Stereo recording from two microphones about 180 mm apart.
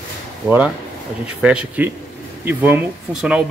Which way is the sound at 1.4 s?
5° right (ahead or behind).